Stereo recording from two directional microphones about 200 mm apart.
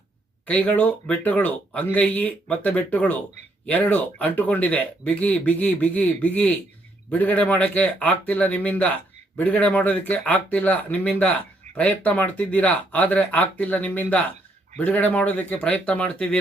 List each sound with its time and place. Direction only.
0.4 s speech: 5° left (ahead or behind)